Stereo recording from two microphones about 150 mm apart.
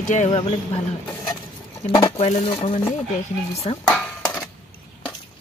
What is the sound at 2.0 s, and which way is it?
Speech, 40° left (ahead or behind).